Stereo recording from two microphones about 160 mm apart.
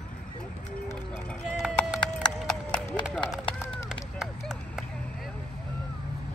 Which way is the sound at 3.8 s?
Centre (ahead or behind).